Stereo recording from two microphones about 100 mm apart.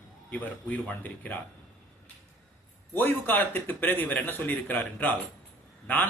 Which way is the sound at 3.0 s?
20° left (ahead or behind).